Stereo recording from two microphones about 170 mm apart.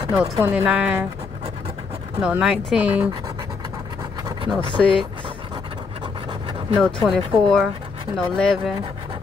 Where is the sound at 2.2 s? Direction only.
5° right (ahead or behind).